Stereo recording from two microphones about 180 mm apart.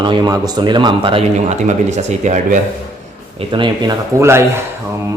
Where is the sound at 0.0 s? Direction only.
25° right (ahead or behind); by 2.6 s 40° right (ahead or behind).